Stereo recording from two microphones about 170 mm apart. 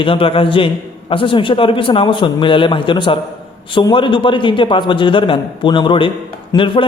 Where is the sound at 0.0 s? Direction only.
30° left (ahead or behind).